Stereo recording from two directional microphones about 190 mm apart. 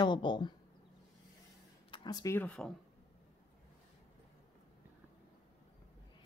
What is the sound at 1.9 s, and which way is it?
Speech, 20° left (ahead or behind).